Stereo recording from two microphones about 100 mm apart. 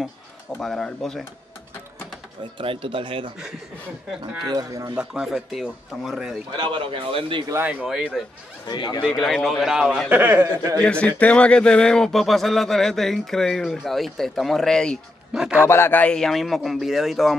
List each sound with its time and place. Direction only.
0.6 s speech: 5° left (ahead or behind)
2.6 s a man's voice: 65° right (ahead or behind)
4.5 s speech: 35° right (ahead or behind)
4.9 s speech: 5° right (ahead or behind)
6.5 s a man's voice: 50° right (ahead or behind)
7.8 s speech: 5° right (ahead or behind)
8.6 s speech: 45° left (ahead or behind)
9.2 s speech: 5° left (ahead or behind)
10.0 s speech: 20° right (ahead or behind)
10.8 s a man's voice: 10° left (ahead or behind)
15.3 s speech: 5° right (ahead or behind)
15.6 s speech: 25° left (ahead or behind); by 17.4 s centre (ahead or behind)